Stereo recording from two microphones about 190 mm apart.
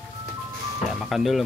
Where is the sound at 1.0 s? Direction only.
Centre (ahead or behind).